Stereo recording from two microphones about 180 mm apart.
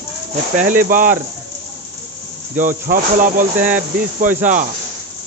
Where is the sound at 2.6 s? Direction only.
45° right (ahead or behind).